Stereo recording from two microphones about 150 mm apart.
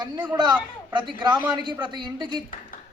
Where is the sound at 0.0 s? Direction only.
30° right (ahead or behind).